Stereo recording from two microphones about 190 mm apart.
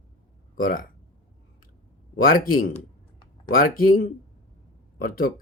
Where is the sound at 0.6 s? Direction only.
50° left (ahead or behind).